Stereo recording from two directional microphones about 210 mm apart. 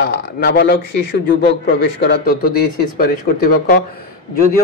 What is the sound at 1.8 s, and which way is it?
Speech, 55° left (ahead or behind).